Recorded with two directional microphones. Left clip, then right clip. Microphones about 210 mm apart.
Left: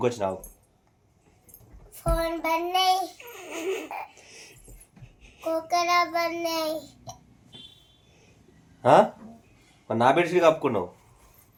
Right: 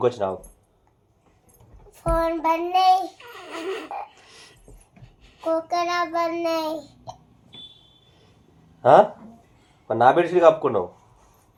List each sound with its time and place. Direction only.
0.0 s speech: 30° left (ahead or behind)
1.9 s child singing: 20° left (ahead or behind)
2.8 s a child's voice: 5° left (ahead or behind)
4.2 s dog: 15° left (ahead or behind)
5.2 s child singing: 10° left (ahead or behind)
8.8 s a sound: 35° left (ahead or behind)
9.8 s speech: 35° left (ahead or behind)